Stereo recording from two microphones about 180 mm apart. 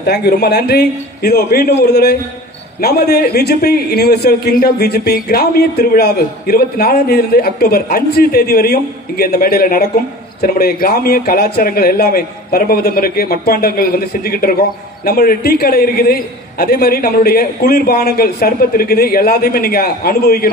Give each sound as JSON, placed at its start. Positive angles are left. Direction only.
{"t": 0.0, "sound": "a man's voice", "side_deg": 65}